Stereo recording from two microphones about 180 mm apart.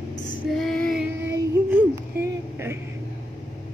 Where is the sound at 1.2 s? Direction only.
10° right (ahead or behind).